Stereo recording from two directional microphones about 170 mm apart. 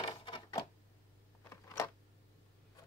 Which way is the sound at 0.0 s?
30° left (ahead or behind).